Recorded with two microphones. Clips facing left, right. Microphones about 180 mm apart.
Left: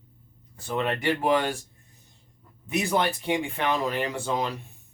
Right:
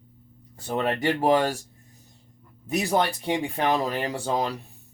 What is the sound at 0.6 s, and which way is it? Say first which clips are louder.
Speech: right 2 dB; 40° right (ahead or behind).